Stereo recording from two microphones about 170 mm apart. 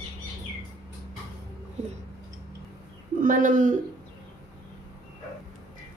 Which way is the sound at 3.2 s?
50° right (ahead or behind).